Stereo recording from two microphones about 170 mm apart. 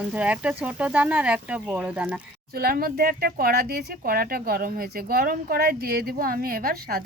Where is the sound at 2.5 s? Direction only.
60° right (ahead or behind).